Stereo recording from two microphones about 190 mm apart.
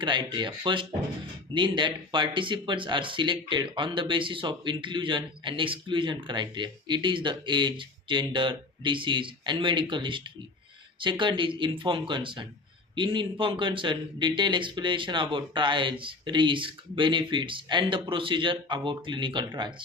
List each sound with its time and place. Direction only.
0.0 s speech: 25° right (ahead or behind)